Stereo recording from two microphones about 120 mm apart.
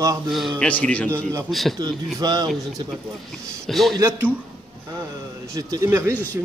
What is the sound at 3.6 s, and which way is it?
Speech, centre (ahead or behind).